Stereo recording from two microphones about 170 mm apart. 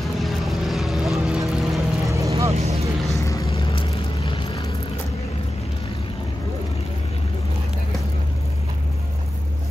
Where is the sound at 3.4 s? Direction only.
30° left (ahead or behind).